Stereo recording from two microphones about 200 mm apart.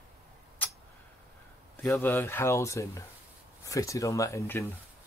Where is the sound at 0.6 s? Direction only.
10° left (ahead or behind).